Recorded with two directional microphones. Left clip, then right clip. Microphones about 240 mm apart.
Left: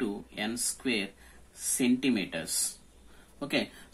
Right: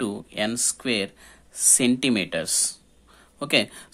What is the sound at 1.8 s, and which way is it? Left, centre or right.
Speech, right.